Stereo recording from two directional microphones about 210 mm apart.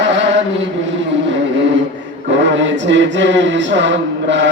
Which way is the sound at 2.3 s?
60° right (ahead or behind).